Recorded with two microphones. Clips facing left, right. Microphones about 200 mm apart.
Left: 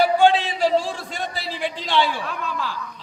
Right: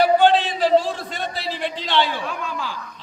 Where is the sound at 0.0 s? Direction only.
10° left (ahead or behind).